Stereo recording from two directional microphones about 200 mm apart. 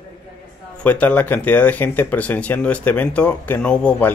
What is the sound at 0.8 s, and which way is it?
Speech, 5° left (ahead or behind).